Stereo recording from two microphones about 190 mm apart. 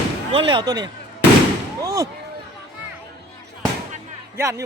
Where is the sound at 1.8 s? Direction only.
15° right (ahead or behind).